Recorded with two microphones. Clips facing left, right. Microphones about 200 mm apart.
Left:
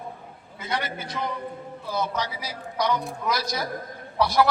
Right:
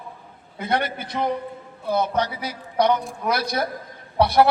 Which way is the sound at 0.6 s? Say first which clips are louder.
Right 6 dB; 60° right (ahead or behind).